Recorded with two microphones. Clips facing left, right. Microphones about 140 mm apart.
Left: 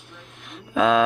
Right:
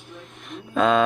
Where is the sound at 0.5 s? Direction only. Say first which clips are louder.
Even; centre (ahead or behind).